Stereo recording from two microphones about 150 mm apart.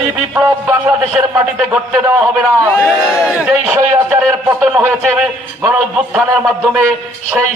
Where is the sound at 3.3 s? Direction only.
5° right (ahead or behind).